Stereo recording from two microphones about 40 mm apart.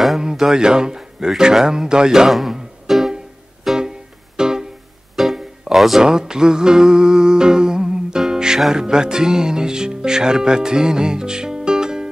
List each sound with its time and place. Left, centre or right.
0.2 s speech: centre
2.9 s music: centre
6.0 s music: centre
8.7 s speech: centre